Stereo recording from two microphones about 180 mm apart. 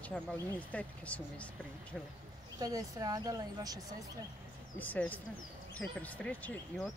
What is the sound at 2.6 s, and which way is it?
Speech, 20° right (ahead or behind).